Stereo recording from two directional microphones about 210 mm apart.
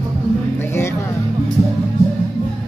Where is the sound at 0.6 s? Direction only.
10° left (ahead or behind).